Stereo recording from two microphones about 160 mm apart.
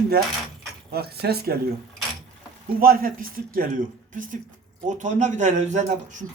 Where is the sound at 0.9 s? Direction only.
75° right (ahead or behind).